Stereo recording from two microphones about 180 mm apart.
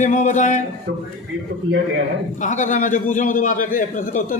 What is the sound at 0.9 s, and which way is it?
Speech, 80° right.